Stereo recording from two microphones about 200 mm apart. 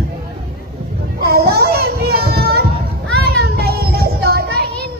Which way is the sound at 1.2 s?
50° right (ahead or behind).